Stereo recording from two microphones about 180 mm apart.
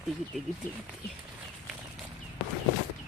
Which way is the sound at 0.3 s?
5° right (ahead or behind).